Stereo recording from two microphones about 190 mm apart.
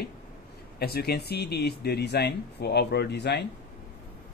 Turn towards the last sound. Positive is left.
turn(degrees=60)  # may be behind; listen again after turning